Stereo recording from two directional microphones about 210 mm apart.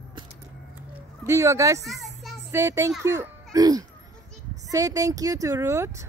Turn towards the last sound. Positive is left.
turn(degrees=-15)  # may be behind; listen again after turning